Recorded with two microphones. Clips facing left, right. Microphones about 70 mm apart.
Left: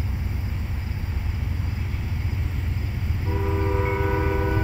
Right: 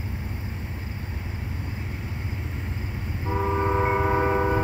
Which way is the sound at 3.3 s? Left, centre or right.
Right.